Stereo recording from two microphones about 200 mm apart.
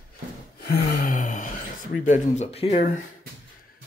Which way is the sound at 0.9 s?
45° left (ahead or behind).